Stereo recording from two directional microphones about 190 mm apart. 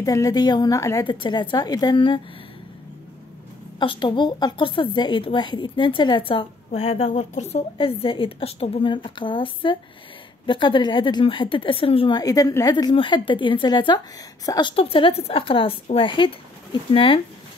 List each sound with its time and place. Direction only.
0.0 s a woman's voice: 20° left (ahead or behind)
3.8 s a woman's voice: 25° left (ahead or behind)